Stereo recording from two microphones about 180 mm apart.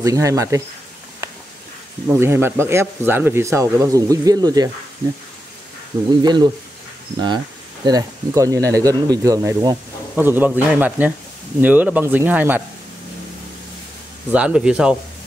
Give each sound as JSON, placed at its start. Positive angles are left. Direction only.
{"t": 0.0, "sound": "speech", "side_deg": -20}
{"t": 2.0, "sound": "speech", "side_deg": -15}
{"t": 6.2, "sound": "speech", "side_deg": -25}
{"t": 7.8, "sound": "speech", "side_deg": -20}
{"t": 14.3, "sound": "speech", "side_deg": -5}